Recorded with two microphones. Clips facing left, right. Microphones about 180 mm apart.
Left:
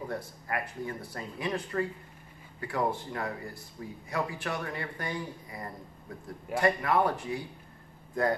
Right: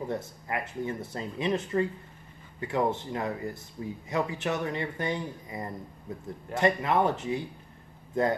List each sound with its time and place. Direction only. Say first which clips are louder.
0.1 s speech: right 2 dB; 20° right (ahead or behind)